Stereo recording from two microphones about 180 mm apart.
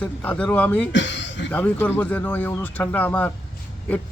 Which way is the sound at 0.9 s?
90° left.